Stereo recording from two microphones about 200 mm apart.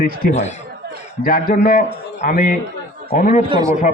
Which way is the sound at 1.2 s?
45° left (ahead or behind).